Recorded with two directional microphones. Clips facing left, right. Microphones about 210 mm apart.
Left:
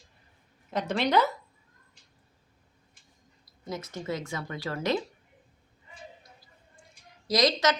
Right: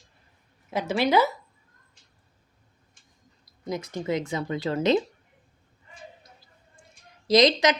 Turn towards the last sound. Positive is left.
turn(degrees=-15)  # may be behind; listen again after turning